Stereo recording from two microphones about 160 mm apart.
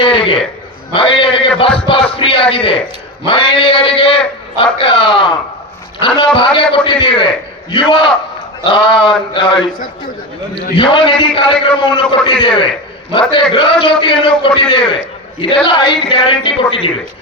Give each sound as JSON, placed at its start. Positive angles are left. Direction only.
{"t": 0.0, "sound": "a man's voice", "side_deg": 35}